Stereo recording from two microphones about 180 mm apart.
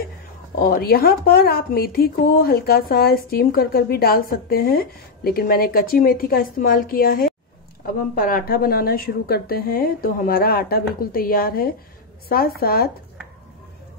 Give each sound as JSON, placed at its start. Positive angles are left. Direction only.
{"t": 0.6, "sound": "a woman's voice", "side_deg": 55}